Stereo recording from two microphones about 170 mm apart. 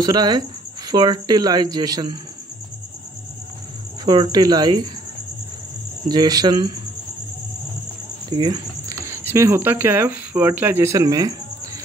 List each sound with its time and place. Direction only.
0.0 s speech: 25° right (ahead or behind)
4.0 s speech: 25° right (ahead or behind)
6.0 s speech: 25° right (ahead or behind)
8.3 s speech: 25° right (ahead or behind)